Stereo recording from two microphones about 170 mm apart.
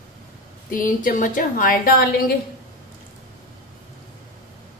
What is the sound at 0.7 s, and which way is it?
A woman's voice, 55° left (ahead or behind).